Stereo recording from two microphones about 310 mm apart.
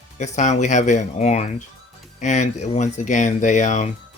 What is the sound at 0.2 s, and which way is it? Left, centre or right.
Speech, left.